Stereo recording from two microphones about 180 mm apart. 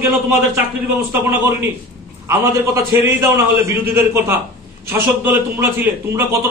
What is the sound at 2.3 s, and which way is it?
A man's voice, 15° right (ahead or behind).